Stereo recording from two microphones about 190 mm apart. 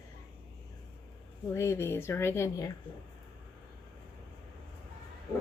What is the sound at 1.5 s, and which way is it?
Speech, 15° left (ahead or behind).